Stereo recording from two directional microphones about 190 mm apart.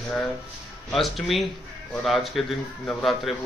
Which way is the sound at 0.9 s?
Centre (ahead or behind).